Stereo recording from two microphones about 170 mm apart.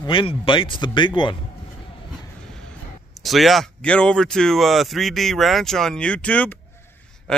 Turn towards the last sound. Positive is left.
turn(degrees=5)  # may be behind; listen again after turning